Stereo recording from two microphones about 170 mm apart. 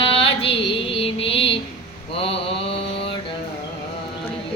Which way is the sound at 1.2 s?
35° left (ahead or behind).